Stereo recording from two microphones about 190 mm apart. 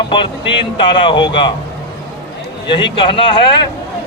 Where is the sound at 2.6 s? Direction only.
25° left (ahead or behind).